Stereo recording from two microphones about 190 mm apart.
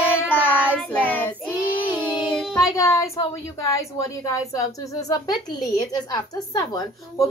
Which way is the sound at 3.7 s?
15° left (ahead or behind).